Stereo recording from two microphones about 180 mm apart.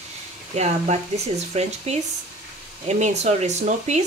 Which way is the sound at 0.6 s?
40° right (ahead or behind).